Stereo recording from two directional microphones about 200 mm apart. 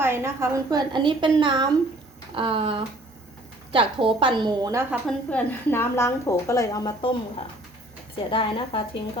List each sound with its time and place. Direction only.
0.0 s a woman's voice: 10° right (ahead or behind)
4.9 s a woman's voice: 5° left (ahead or behind); by 9.0 s 25° left (ahead or behind)